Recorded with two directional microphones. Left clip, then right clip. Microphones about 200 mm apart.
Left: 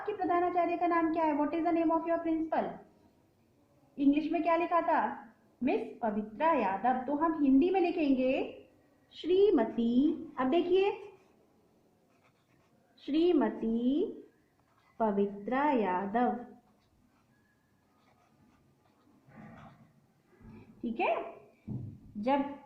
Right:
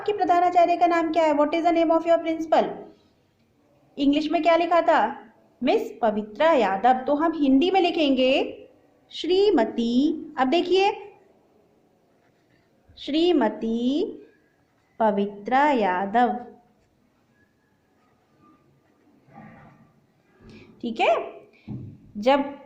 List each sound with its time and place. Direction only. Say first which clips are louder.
0.2 s a woman's voice: right 11 dB; 30° right (ahead or behind)
3.9 s a woman's voice: right 7 dB; 25° right (ahead or behind)
13.0 s a woman's voice: right 7 dB; 20° right (ahead or behind)
20.8 s a woman's voice: right 9 dB; 25° right (ahead or behind)